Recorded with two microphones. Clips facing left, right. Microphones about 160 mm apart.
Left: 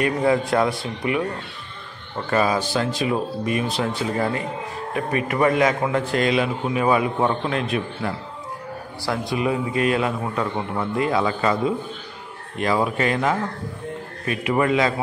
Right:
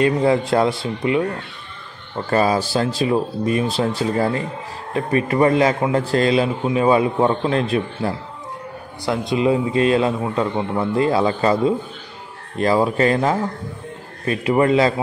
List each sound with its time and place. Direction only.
0.0 s a man's voice: 25° right (ahead or behind)
2.3 s a man's voice: 35° right (ahead or behind)
9.0 s a man's voice: 20° right (ahead or behind)